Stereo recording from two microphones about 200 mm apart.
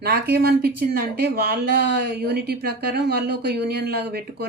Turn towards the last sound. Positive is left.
turn(degrees=-55)  # may be behind; listen again after turning